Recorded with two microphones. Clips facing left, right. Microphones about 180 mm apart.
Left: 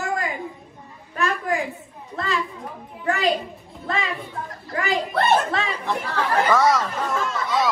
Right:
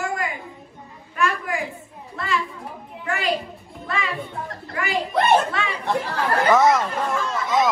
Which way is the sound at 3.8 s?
40° left (ahead or behind).